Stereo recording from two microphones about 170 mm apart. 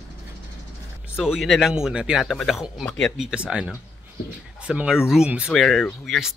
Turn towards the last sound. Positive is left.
turn(degrees=0)  # may be behind; listen again after turning